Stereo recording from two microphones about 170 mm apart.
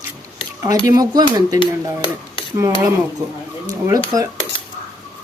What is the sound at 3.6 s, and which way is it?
Speech, 20° right (ahead or behind).